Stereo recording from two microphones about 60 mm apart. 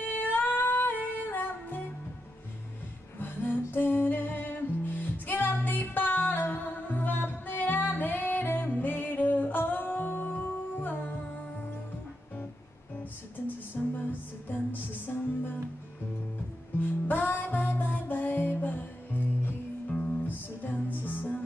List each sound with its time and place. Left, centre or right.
0.0 s music: left
3.2 s music: left
13.8 s music: left
16.8 s music: left